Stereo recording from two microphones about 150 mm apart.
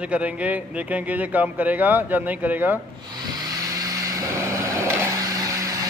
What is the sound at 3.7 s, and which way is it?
Vehicle, 20° right (ahead or behind).